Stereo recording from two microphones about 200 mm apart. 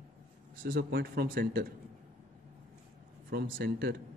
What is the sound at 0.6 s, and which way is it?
Speech, 45° right (ahead or behind).